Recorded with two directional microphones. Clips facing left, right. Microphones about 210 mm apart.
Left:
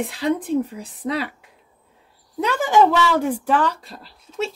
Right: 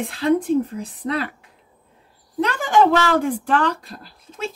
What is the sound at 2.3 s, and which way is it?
Speech, 10° left (ahead or behind).